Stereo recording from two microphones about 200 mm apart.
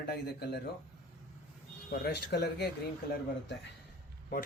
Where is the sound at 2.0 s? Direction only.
55° left (ahead or behind).